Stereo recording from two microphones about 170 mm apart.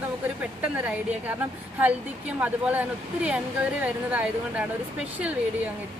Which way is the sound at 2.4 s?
10° right (ahead or behind).